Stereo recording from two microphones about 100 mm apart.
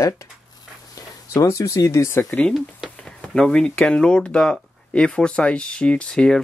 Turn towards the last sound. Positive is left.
turn(degrees=5)  # may be behind; listen again after turning